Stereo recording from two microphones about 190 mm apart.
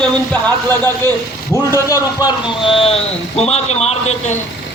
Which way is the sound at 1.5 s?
15° left (ahead or behind).